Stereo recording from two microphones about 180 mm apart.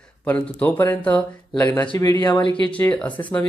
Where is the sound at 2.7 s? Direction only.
5° left (ahead or behind).